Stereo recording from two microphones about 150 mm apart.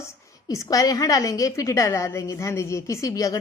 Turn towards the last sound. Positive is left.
turn(degrees=25)  # may be behind; listen again after turning